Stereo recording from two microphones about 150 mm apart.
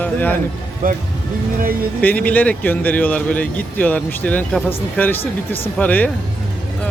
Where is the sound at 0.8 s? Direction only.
65° right (ahead or behind).